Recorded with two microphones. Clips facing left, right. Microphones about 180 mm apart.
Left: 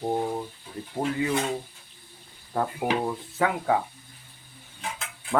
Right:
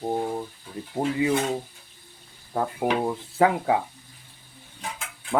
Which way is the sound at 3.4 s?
30° right (ahead or behind).